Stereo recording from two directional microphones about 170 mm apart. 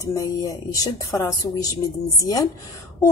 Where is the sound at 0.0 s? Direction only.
20° left (ahead or behind).